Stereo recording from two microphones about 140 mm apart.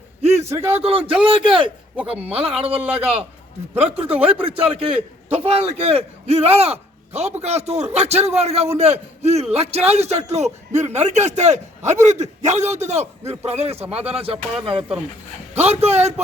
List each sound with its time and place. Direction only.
0.2 s a sound: 50° right (ahead or behind)
0.7 s a man's voice: 45° right (ahead or behind)
2.8 s a man's voice: 10° right (ahead or behind)
4.0 s a man's voice: 45° right (ahead or behind)